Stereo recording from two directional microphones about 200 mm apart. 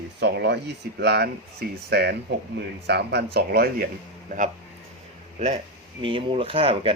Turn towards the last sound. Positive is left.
turn(degrees=-30)  # may be behind; listen again after turning